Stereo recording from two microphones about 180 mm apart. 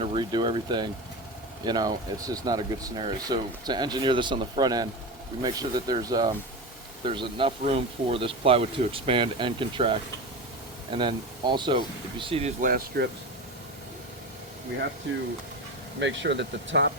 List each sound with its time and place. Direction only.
0.0 s speech: 30° right (ahead or behind)
12.6 s speech: 55° right (ahead or behind)
15.1 s speech: 90° right